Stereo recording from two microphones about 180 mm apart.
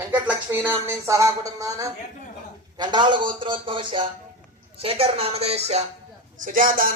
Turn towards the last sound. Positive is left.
turn(degrees=-50)  # may be behind; listen again after turning